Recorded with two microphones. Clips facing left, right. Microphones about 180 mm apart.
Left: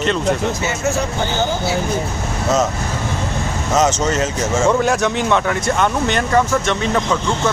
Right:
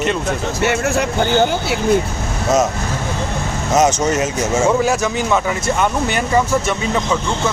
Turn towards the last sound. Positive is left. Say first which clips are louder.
# left 1 dB
turn(degrees=-10)  # may be behind; listen again after turning